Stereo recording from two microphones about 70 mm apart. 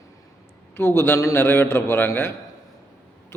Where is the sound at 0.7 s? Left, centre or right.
Left.